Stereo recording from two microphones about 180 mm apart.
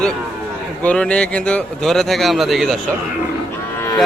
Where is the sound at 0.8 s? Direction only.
5° left (ahead or behind).